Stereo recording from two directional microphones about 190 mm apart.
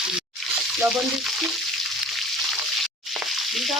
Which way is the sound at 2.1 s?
Centre (ahead or behind).